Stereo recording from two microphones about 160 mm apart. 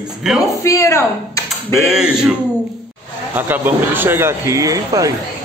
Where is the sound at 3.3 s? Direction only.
15° right (ahead or behind).